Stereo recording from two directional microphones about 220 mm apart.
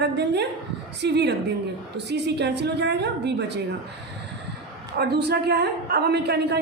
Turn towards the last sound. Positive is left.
turn(degrees=-45)  # may be behind; listen again after turning